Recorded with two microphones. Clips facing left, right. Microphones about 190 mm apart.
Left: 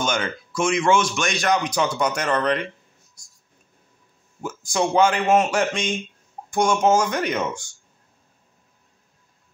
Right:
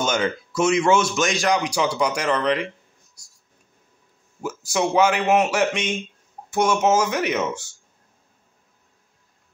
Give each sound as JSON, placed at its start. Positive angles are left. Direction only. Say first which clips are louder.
{"t": 0.0, "sound": "a man's voice", "louder": "right 2 dB", "side_deg": -25}
{"t": 1.7, "sound": "speech", "louder": "even", "side_deg": -10}
{"t": 4.4, "sound": "speech", "louder": "even", "side_deg": -5}